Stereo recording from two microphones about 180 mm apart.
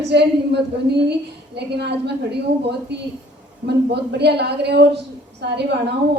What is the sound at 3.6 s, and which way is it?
A woman's voice, 65° right (ahead or behind).